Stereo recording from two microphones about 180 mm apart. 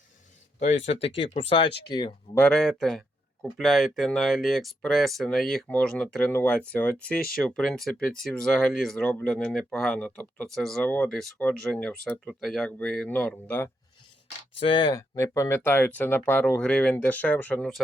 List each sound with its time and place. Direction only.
1.0 s speech: 30° left (ahead or behind)
2.4 s speech: 5° left (ahead or behind)
14.6 s speech: 25° left (ahead or behind); by 17.7 s 5° left (ahead or behind)